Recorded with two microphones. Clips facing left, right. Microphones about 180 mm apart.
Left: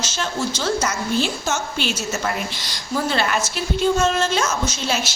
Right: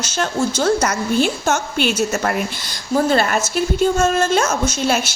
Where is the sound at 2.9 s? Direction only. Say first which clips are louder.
Right 5 dB; 45° right (ahead or behind).